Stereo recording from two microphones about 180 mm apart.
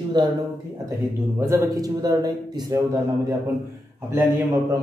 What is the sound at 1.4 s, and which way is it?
A man's voice, 15° right (ahead or behind).